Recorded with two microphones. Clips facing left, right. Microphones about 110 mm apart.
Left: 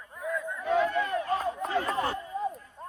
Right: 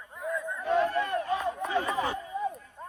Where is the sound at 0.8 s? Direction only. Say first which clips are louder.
Even; 30° right (ahead or behind).